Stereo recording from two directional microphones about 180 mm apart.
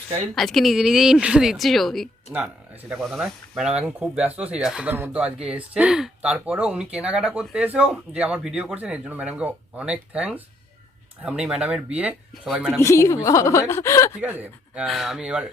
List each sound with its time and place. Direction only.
0.3 s a woman's voice: centre (ahead or behind)
12.8 s a woman's voice: 15° left (ahead or behind)
14.2 s a woman's voice: 10° right (ahead or behind)